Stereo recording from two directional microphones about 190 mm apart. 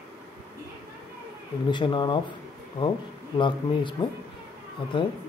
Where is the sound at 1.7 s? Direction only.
25° left (ahead or behind).